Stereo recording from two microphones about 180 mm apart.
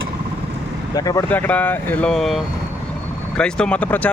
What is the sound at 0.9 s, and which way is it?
Speech, 20° left (ahead or behind).